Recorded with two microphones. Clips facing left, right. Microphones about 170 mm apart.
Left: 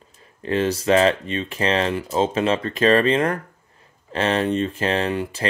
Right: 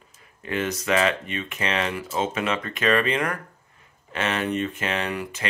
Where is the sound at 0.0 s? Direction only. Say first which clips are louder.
Left 8 dB; 30° left (ahead or behind).